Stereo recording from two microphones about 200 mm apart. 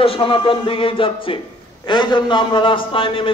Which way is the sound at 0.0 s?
25° left (ahead or behind).